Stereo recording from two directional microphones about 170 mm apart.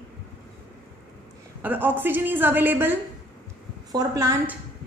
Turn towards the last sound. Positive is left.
turn(degrees=-20)  # may be behind; listen again after turning